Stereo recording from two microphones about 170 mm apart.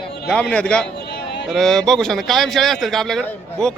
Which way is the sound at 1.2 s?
80° left.